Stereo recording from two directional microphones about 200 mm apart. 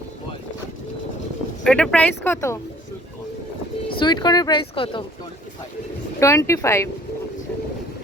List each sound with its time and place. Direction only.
1.6 s speech: 5° left (ahead or behind)
3.8 s speech: 20° left (ahead or behind)
6.1 s speech: 15° left (ahead or behind)